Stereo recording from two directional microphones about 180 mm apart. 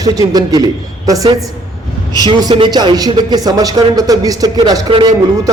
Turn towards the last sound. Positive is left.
turn(degrees=-20)  # may be behind; listen again after turning